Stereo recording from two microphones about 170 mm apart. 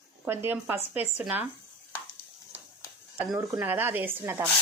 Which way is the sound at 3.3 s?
20° right (ahead or behind).